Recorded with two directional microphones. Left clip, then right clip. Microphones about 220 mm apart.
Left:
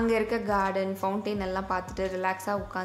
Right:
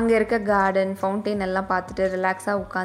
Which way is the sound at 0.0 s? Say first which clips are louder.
Right 6 dB; 20° right (ahead or behind).